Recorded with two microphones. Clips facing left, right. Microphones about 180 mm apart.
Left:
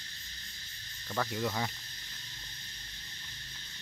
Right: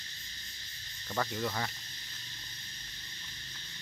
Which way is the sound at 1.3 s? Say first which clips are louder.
Left 1 dB; 10° left (ahead or behind).